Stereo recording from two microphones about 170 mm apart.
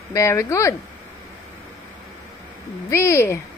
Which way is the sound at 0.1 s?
15° left (ahead or behind).